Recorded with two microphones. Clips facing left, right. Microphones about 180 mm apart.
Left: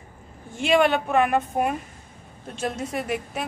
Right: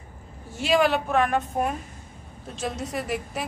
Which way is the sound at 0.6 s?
Centre (ahead or behind).